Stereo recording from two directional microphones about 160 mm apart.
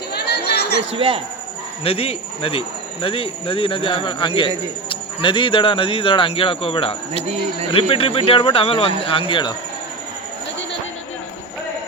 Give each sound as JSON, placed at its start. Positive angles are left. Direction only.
{"t": 0.1, "sound": "chatter", "side_deg": 90}
{"t": 0.9, "sound": "speech", "side_deg": -35}
{"t": 1.8, "sound": "speech", "side_deg": 35}